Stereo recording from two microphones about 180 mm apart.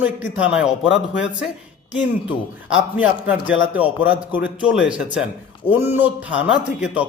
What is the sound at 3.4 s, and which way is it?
Speech, 90° left.